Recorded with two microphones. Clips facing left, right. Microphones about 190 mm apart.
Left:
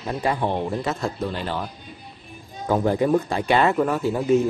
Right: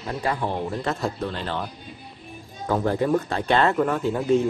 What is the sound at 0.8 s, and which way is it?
Speech, 5° left (ahead or behind).